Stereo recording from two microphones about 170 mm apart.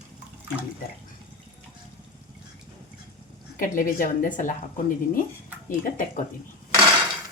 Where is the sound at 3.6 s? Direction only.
55° left (ahead or behind).